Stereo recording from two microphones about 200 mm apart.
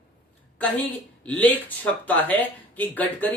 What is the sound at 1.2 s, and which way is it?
Speech, 5° left (ahead or behind).